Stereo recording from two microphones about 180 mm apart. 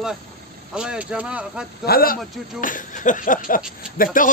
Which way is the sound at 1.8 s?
55° left (ahead or behind).